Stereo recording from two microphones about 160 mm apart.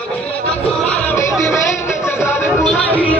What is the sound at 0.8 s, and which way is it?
Music, 5° left (ahead or behind).